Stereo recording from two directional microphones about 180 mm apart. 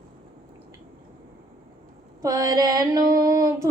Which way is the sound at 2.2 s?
20° right (ahead or behind).